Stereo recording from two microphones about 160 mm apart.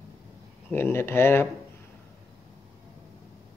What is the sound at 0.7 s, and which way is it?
Speech, 15° left (ahead or behind).